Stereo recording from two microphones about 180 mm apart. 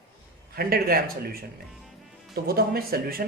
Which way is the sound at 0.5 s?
55° right (ahead or behind).